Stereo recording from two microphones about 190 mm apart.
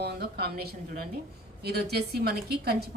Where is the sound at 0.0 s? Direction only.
55° right (ahead or behind).